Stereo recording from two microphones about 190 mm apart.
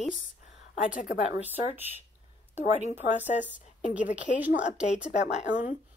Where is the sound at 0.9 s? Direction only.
45° left (ahead or behind).